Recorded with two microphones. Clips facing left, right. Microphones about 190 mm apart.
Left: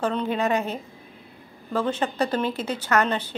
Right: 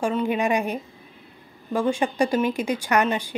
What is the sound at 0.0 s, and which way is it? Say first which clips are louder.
A woman's voice: right 1 dB; 10° right (ahead or behind).